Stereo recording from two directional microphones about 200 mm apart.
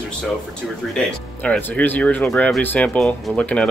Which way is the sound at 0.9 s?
5° left (ahead or behind).